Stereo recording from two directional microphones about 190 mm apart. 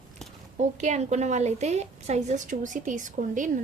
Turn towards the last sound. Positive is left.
turn(degrees=-40)  # may be behind; listen again after turning